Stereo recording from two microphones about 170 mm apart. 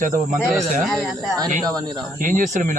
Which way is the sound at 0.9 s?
Centre (ahead or behind).